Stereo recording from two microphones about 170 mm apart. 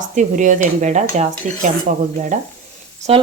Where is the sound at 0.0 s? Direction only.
45° right (ahead or behind).